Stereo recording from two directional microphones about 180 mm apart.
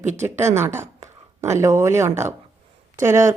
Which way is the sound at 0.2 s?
15° right (ahead or behind).